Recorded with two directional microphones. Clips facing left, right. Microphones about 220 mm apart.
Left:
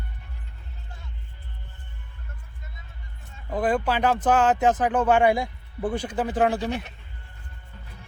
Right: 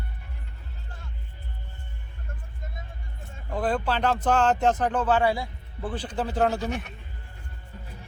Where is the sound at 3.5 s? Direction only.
10° left (ahead or behind).